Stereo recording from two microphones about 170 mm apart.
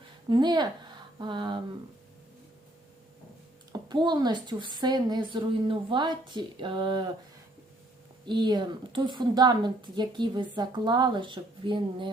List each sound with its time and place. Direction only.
0.3 s speech: 25° right (ahead or behind)
3.7 s a woman's voice: 25° right (ahead or behind)
8.2 s a woman's voice: 25° right (ahead or behind)